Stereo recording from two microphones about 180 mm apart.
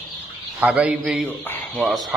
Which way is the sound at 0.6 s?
5° right (ahead or behind).